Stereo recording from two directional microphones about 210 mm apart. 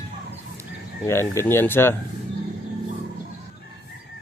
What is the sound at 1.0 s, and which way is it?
Speech, 10° left (ahead or behind).